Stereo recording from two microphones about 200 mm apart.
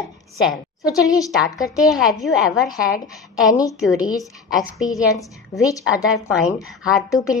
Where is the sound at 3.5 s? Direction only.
20° left (ahead or behind).